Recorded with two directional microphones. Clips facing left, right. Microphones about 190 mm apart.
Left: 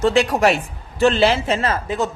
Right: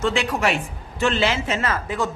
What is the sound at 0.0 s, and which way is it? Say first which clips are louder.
A man's voice: left 6 dB; 40° left (ahead or behind).